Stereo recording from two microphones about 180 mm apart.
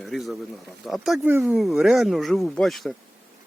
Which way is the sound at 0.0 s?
Centre (ahead or behind).